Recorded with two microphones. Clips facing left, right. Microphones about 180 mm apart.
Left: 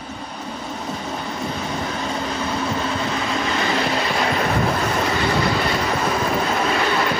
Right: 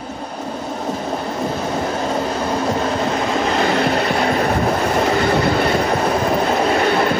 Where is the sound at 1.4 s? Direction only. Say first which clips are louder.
Right 5 dB; 45° right (ahead or behind).